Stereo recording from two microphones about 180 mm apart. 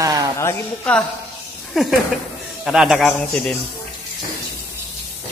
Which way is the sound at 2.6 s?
5° right (ahead or behind).